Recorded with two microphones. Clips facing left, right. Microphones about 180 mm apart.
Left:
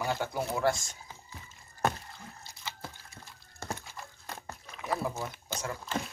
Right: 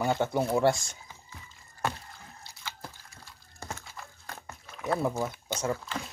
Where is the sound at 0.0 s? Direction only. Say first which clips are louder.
Right 5 dB; 25° right (ahead or behind).